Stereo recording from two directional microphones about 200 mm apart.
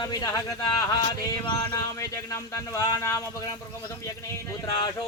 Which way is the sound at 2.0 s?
15° left (ahead or behind).